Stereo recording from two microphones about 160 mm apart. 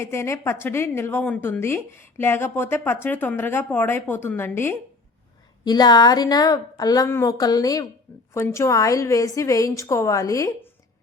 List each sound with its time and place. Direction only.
0.0 s speech: 15° left (ahead or behind)
5.6 s a woman's voice: 25° left (ahead or behind)